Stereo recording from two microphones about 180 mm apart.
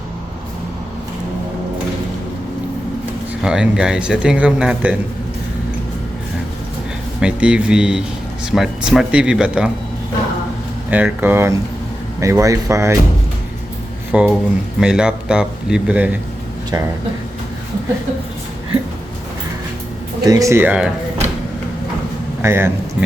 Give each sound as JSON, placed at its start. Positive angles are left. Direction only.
{"t": 3.4, "sound": "a man's voice", "side_deg": -5}
{"t": 7.2, "sound": "a man's voice", "side_deg": -5}
{"t": 10.9, "sound": "speech", "side_deg": -10}
{"t": 14.1, "sound": "a man's voice", "side_deg": -5}
{"t": 20.2, "sound": "speech", "side_deg": -20}
{"t": 22.4, "sound": "speech", "side_deg": -15}